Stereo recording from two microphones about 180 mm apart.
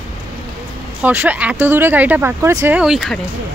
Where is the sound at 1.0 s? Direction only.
10° right (ahead or behind).